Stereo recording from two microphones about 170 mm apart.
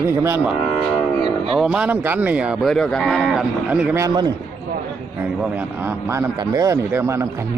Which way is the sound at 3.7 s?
15° right (ahead or behind).